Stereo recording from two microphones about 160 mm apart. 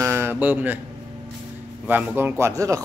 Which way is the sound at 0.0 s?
15° right (ahead or behind).